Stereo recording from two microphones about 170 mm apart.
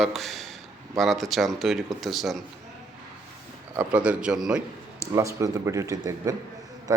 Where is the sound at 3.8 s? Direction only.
5° right (ahead or behind).